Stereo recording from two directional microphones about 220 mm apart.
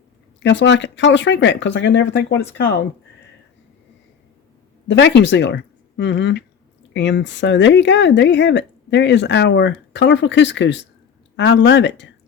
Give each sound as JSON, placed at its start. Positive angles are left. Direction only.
{"t": 0.4, "sound": "speech", "side_deg": 55}
{"t": 4.9, "sound": "speech", "side_deg": 50}